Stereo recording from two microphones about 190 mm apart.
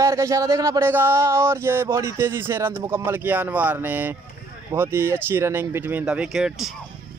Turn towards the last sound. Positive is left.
turn(degrees=-5)  # may be behind; listen again after turning